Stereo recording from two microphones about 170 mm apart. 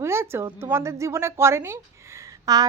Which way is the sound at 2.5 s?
20° right (ahead or behind).